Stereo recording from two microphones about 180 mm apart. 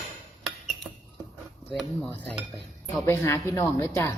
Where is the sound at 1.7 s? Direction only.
10° left (ahead or behind).